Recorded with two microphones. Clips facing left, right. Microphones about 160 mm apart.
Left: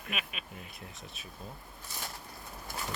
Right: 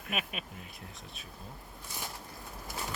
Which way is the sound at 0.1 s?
40° right (ahead or behind).